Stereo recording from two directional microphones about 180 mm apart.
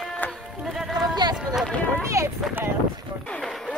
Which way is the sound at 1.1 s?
25° right (ahead or behind).